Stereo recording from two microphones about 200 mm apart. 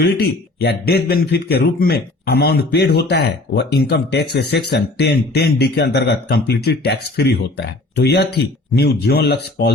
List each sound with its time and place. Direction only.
0.0 s a man's voice: 55° left (ahead or behind)